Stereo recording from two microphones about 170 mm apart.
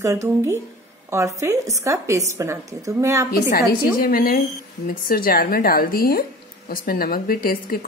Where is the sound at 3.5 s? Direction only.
60° left (ahead or behind).